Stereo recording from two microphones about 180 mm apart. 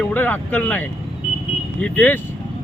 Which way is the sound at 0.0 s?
10° left (ahead or behind).